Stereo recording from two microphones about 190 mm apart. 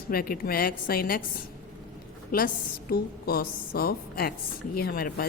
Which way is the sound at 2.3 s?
55° left (ahead or behind).